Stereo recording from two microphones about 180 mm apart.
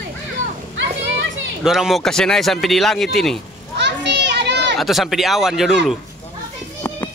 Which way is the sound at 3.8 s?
70° right (ahead or behind).